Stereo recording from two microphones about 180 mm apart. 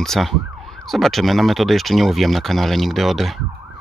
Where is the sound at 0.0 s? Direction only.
Centre (ahead or behind).